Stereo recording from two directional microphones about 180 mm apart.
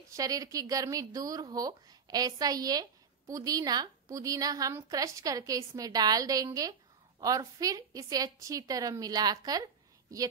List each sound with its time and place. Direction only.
0.1 s speech: 20° right (ahead or behind)